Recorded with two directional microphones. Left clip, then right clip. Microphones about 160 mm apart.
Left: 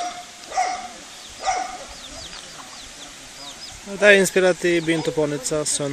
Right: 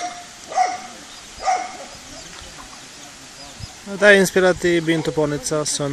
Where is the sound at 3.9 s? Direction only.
Centre (ahead or behind).